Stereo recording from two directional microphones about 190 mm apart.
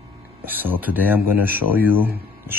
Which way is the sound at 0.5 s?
10° right (ahead or behind).